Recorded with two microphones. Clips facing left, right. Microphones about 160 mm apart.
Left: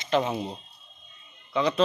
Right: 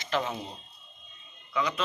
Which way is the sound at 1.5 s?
35° left (ahead or behind).